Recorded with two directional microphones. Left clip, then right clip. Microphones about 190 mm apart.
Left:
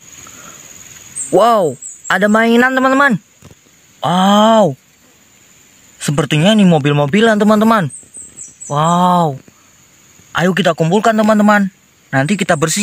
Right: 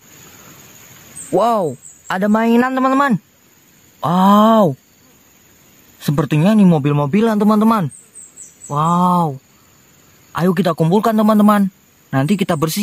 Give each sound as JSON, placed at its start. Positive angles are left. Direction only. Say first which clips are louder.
{"t": 1.3, "sound": "a man's voice", "louder": "left 5 dB", "side_deg": 5}
{"t": 4.0, "sound": "a man's voice", "louder": "left 1 dB", "side_deg": -10}
{"t": 5.9, "sound": "a man's voice", "louder": "left 3 dB", "side_deg": -5}
{"t": 8.6, "sound": "a sound", "louder": "left 3 dB", "side_deg": 10}
{"t": 10.3, "sound": "a man's voice", "louder": "left 4 dB", "side_deg": -5}